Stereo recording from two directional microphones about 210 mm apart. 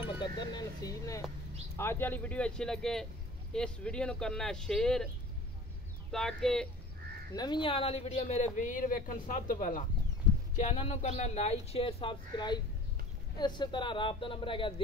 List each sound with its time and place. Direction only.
0.2 s speech: 20° left (ahead or behind); by 5.0 s centre (ahead or behind)
6.1 s speech: 5° left (ahead or behind)
7.3 s speech: 20° left (ahead or behind)